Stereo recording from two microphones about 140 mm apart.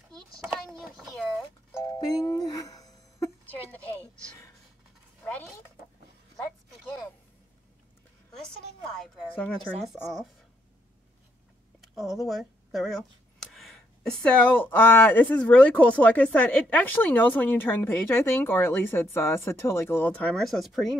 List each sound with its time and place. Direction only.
0.5 s a sound: centre (ahead or behind)
2.0 s music: 30° left (ahead or behind)
8.9 s speech: 10° left (ahead or behind)
11.9 s speech: centre (ahead or behind)
12.3 s a sound: centre (ahead or behind)
14.2 s speech: 10° left (ahead or behind)